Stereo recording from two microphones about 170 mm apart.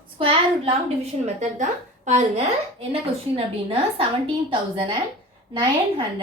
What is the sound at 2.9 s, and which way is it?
Speech, 35° right (ahead or behind).